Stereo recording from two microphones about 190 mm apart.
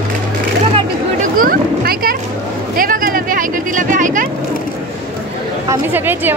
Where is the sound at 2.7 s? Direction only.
50° right (ahead or behind).